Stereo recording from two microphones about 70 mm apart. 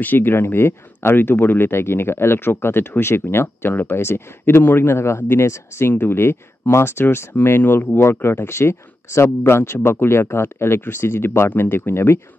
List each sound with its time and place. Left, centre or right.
0.0 s speech: left